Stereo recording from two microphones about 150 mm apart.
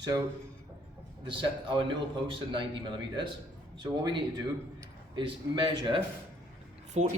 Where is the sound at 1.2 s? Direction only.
35° right (ahead or behind).